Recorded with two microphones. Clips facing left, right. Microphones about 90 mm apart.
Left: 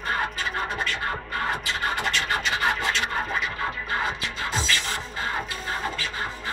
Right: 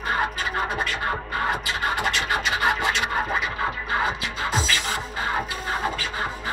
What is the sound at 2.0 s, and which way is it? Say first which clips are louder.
Scratch: right 2 dB; 10° right (ahead or behind).